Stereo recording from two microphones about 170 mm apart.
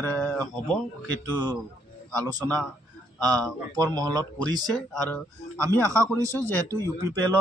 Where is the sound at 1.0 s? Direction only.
25° right (ahead or behind).